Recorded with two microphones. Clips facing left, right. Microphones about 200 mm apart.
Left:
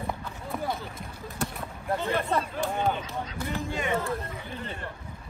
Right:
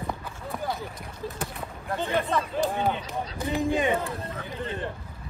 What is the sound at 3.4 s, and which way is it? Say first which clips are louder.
Speech: right 8 dB; 15° right (ahead or behind).